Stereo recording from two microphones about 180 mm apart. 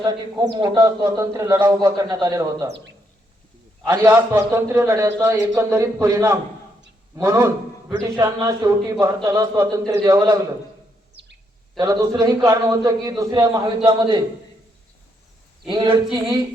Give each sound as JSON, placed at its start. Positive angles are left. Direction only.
{"t": 0.0, "sound": "a man's voice", "side_deg": -20}
{"t": 3.8, "sound": "a man's voice", "side_deg": -15}
{"t": 11.2, "sound": "bird", "side_deg": -70}
{"t": 11.8, "sound": "a man's voice", "side_deg": -20}
{"t": 15.6, "sound": "a man's voice", "side_deg": -25}